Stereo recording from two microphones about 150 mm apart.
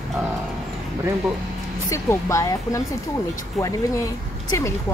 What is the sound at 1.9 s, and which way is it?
Speech, 20° left (ahead or behind).